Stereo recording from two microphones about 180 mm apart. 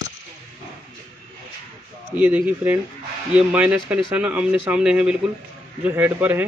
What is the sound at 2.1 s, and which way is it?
A man's voice, 10° right (ahead or behind).